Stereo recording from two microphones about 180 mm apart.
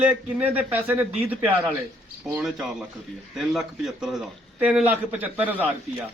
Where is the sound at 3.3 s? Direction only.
Centre (ahead or behind).